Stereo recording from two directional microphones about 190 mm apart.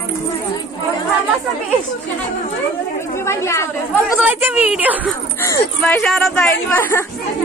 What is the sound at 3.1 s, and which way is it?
Speech, 15° left (ahead or behind).